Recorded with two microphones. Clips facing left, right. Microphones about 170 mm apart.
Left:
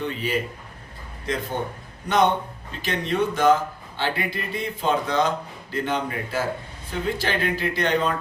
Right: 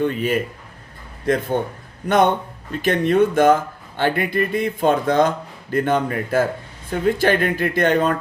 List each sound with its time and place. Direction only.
0.0 s speech: 50° right (ahead or behind)